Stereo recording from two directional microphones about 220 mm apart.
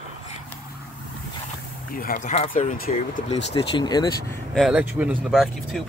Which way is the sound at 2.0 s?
40° left (ahead or behind).